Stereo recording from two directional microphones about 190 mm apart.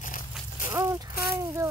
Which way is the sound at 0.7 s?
20° right (ahead or behind).